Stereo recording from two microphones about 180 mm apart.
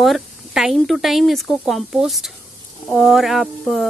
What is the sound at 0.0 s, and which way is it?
Speech, centre (ahead or behind).